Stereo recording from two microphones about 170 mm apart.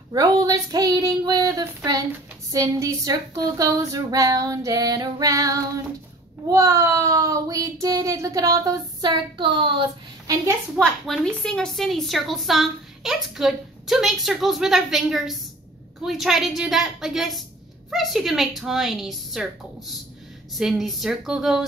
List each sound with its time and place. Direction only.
0.1 s speech: 20° right (ahead or behind)
10.8 s a woman's voice: 5° left (ahead or behind)
20.5 s a woman's voice: centre (ahead or behind)